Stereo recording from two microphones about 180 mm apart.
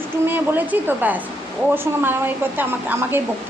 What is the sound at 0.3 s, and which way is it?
A woman's voice, 10° right (ahead or behind).